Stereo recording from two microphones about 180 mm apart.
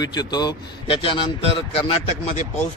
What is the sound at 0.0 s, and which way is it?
A man's voice, 25° left (ahead or behind).